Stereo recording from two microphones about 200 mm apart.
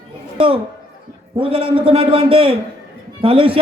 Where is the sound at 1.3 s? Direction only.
25° right (ahead or behind).